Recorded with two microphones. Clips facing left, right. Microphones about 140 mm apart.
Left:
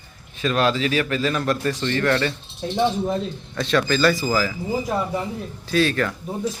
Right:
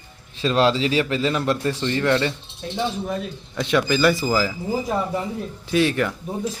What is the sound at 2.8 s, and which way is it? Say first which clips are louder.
Speech: left 4 dB; 25° left (ahead or behind).